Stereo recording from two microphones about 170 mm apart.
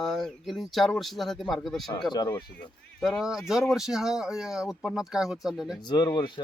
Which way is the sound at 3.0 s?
Centre (ahead or behind).